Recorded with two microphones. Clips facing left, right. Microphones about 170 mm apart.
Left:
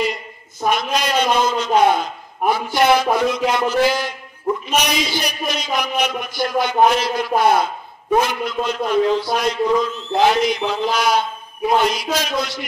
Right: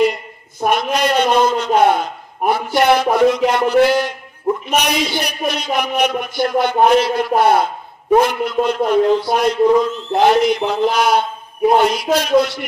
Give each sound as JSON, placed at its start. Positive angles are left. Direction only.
{"t": 0.0, "sound": "a man's voice", "side_deg": -60}